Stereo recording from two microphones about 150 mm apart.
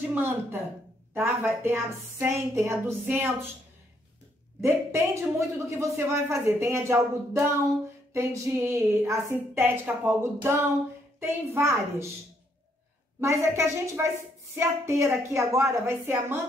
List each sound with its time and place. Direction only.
0.0 s a woman's voice: 15° right (ahead or behind)
4.6 s a woman's voice: 20° right (ahead or behind)
13.2 s a woman's voice: 20° right (ahead or behind)